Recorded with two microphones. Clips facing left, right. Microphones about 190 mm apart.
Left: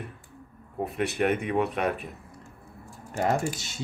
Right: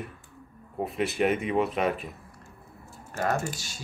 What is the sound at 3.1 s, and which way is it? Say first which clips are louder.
Speech: left 2 dB; 15° left (ahead or behind).